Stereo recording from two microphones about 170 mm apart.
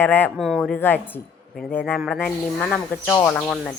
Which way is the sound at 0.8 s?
10° left (ahead or behind).